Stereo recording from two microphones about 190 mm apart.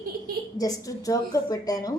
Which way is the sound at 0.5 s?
20° left (ahead or behind).